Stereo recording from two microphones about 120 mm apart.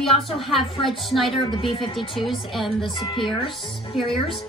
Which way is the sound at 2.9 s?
45° left (ahead or behind).